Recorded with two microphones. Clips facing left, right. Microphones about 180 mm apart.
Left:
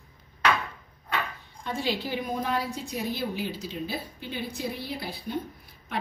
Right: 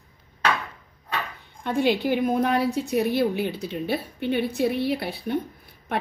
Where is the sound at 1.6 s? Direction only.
65° right (ahead or behind).